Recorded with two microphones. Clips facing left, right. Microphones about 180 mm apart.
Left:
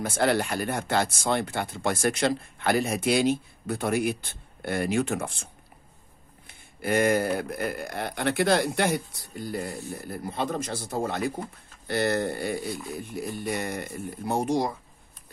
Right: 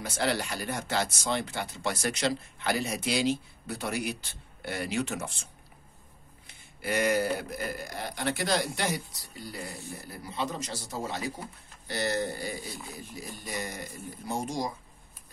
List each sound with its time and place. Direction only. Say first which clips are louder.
0.0 s speech: left 6 dB; 50° left (ahead or behind)